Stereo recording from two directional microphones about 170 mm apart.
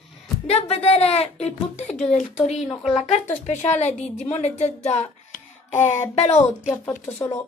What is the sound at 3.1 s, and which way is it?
A woman's voice, 45° left (ahead or behind).